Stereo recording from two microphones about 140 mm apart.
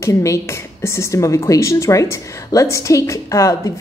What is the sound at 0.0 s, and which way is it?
Speech, 20° left (ahead or behind).